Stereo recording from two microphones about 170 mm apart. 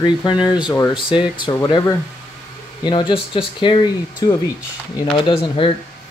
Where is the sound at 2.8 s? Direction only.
25° left (ahead or behind).